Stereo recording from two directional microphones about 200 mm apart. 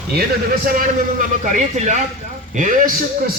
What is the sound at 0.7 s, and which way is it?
A man's voice, 40° right (ahead or behind).